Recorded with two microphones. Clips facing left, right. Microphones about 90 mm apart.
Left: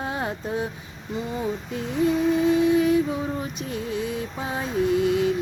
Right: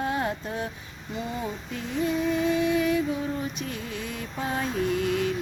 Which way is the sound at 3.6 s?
25° left (ahead or behind).